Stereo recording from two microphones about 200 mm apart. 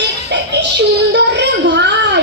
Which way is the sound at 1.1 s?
60° right (ahead or behind).